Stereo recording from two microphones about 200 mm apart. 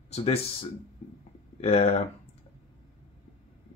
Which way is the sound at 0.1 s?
30° left (ahead or behind).